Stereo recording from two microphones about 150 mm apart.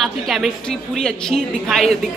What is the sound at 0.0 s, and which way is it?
A woman's voice, centre (ahead or behind).